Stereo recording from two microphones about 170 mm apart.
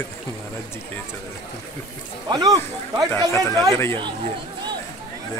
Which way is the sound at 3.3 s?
15° left (ahead or behind).